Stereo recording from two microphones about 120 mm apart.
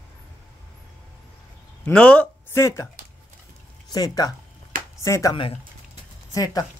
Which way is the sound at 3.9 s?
30° left (ahead or behind).